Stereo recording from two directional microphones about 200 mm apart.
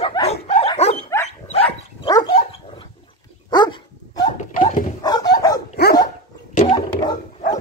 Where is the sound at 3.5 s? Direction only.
20° left (ahead or behind).